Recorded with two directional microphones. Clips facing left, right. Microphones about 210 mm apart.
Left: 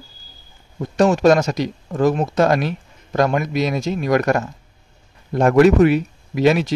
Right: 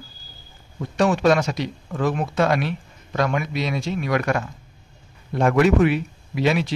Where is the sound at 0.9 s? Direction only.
45° left (ahead or behind).